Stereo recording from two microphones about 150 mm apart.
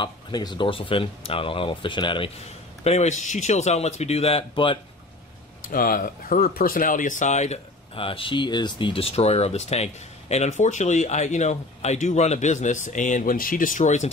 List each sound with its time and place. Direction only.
0.0 s speech: 30° left (ahead or behind)
5.7 s speech: 70° left (ahead or behind); by 14.1 s 50° left (ahead or behind)